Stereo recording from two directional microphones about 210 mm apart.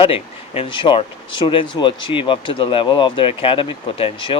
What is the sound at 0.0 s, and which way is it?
Speech, 25° left (ahead or behind).